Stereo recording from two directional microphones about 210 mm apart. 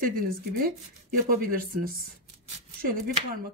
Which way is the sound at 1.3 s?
40° right (ahead or behind).